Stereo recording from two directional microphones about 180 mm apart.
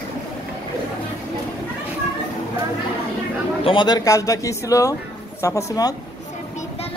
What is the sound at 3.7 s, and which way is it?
Speech, 25° left (ahead or behind).